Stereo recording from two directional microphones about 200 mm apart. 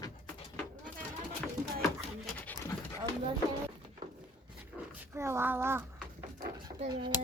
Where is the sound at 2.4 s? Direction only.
10° left (ahead or behind).